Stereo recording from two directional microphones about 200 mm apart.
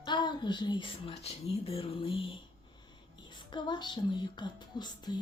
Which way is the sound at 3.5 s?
25° left (ahead or behind).